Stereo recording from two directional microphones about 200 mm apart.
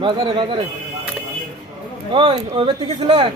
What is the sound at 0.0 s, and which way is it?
Speech, 25° right (ahead or behind).